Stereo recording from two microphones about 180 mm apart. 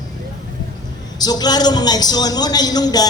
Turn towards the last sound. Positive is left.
turn(degrees=20)  # may be behind; listen again after turning